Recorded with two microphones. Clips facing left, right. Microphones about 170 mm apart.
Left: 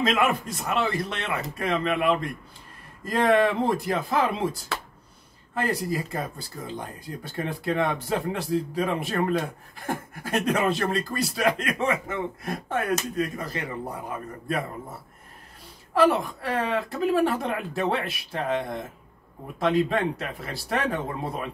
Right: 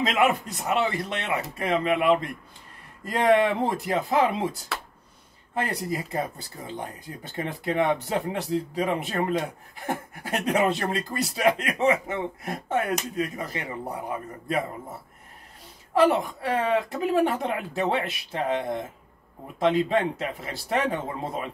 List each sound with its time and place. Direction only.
0.1 s speech: 20° right (ahead or behind)
15.9 s speech: 20° right (ahead or behind)